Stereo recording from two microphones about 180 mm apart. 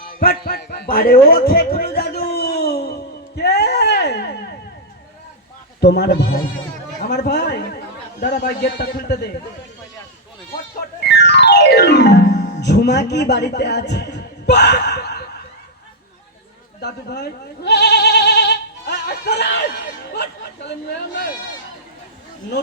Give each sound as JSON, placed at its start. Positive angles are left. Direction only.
{"t": 0.2, "sound": "speech", "side_deg": 55}
{"t": 1.5, "sound": "a sound", "side_deg": 55}
{"t": 5.8, "sound": "a man's voice", "side_deg": 70}
{"t": 10.8, "sound": "music", "side_deg": 70}
{"t": 12.5, "sound": "a man's voice", "side_deg": 70}
{"t": 16.8, "sound": "speech", "side_deg": 65}